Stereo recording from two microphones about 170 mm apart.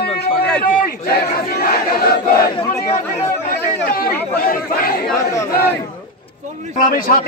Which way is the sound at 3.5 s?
60° left (ahead or behind).